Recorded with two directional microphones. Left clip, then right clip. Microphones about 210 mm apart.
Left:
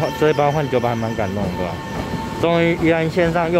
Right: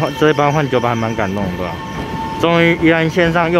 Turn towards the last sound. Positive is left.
turn(degrees=0)  # may be behind; listen again after turning